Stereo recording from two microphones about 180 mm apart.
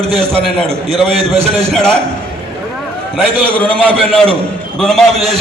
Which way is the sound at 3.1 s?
5° left (ahead or behind).